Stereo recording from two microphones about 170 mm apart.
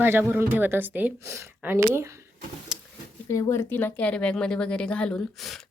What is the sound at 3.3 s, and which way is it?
Speech, 20° left (ahead or behind).